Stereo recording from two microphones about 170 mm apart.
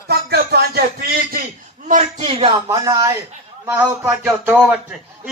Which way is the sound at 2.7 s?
20° right (ahead or behind).